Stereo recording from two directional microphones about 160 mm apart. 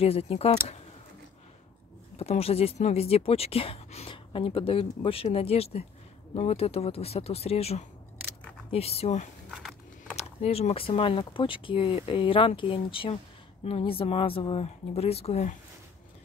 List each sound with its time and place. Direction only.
0.0 s speech: 40° left (ahead or behind)
2.1 s speech: 40° left (ahead or behind)
9.5 s a sound: centre (ahead or behind)
10.1 s speech: 40° left (ahead or behind)